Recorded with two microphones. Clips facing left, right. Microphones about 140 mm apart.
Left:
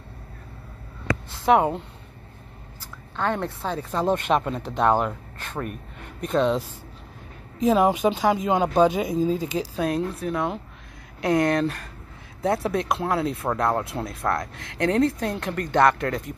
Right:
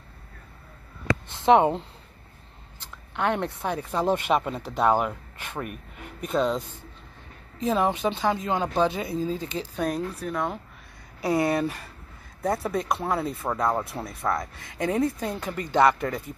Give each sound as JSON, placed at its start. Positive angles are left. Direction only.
{"t": 1.3, "sound": "speech", "side_deg": -20}
{"t": 3.2, "sound": "speech", "side_deg": -15}
{"t": 7.6, "sound": "speech", "side_deg": 15}
{"t": 9.8, "sound": "speech", "side_deg": 0}
{"t": 12.4, "sound": "speech", "side_deg": 0}